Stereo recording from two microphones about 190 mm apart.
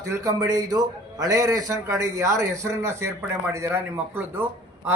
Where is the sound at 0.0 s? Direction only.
15° right (ahead or behind).